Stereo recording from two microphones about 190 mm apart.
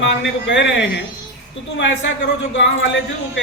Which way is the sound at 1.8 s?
75° left (ahead or behind).